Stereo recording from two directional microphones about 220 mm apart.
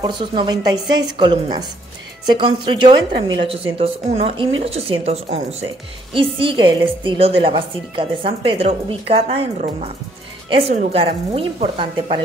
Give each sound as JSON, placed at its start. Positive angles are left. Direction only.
{"t": 0.0, "sound": "a woman's voice", "side_deg": -20}